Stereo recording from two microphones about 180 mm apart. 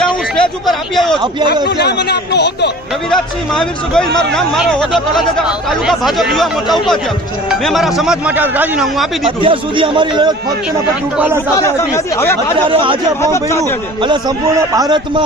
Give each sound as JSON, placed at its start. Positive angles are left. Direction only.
{"t": 0.3, "sound": "speech", "side_deg": 5}
{"t": 1.6, "sound": "speech", "side_deg": 65}
{"t": 3.1, "sound": "speech", "side_deg": 5}
{"t": 9.2, "sound": "speech", "side_deg": -30}
{"t": 11.6, "sound": "speech", "side_deg": 15}
{"t": 12.6, "sound": "speech", "side_deg": -30}